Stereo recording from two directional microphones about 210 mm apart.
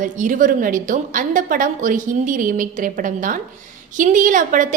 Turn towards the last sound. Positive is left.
turn(degrees=-40)  # may be behind; listen again after turning